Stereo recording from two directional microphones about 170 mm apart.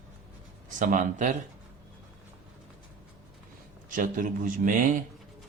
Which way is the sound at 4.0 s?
50° right (ahead or behind).